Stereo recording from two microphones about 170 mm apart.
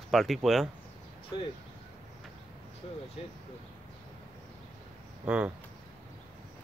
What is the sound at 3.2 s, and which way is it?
Speech, 35° left (ahead or behind).